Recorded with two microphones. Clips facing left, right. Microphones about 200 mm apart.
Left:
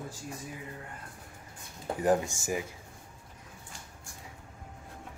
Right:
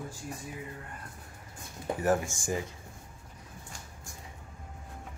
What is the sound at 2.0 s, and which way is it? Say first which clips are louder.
Speech: left 2 dB; 15° left (ahead or behind).